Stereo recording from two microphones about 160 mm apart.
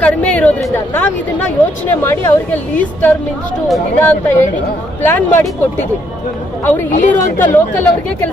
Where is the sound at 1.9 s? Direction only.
15° left (ahead or behind).